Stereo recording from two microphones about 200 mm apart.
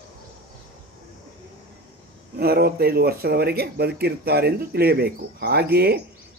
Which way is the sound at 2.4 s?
50° right (ahead or behind).